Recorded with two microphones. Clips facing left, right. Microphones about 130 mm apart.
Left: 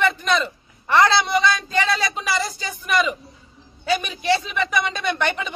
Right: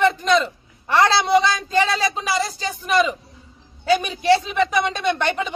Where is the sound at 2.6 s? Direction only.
30° right (ahead or behind).